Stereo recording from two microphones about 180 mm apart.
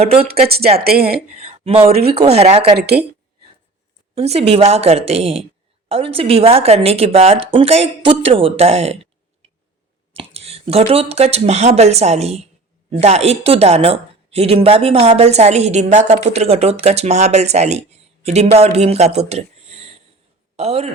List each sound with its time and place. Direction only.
0.0 s a woman's voice: 35° right (ahead or behind)
0.4 s speech: 60° right (ahead or behind)
1.3 s speech: 35° right (ahead or behind)
1.9 s speech: 60° right (ahead or behind)
2.2 s a woman's voice: 35° right (ahead or behind)
2.7 s speech: 65° right (ahead or behind)
4.1 s a woman's voice: 35° right (ahead or behind)
10.2 s a woman's voice: 35° right (ahead or behind)